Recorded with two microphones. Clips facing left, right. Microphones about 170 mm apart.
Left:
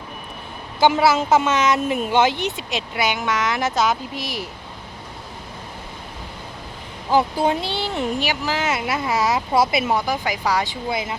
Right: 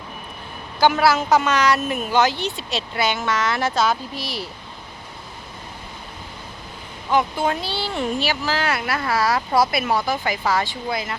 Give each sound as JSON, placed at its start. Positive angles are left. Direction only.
{"t": 0.8, "sound": "a woman's voice", "side_deg": 20}
{"t": 7.1, "sound": "speech", "side_deg": 35}
{"t": 7.5, "sound": "a woman's voice", "side_deg": 20}